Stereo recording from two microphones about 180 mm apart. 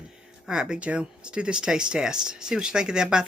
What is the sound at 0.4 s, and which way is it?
Speech, 5° right (ahead or behind).